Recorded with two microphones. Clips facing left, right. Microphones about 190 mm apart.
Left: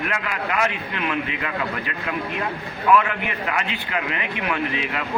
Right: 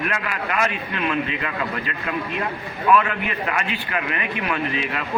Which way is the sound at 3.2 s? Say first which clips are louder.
Right 1 dB; 20° left (ahead or behind).